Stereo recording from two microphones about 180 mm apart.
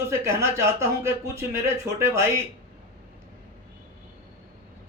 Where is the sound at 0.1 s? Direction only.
15° right (ahead or behind).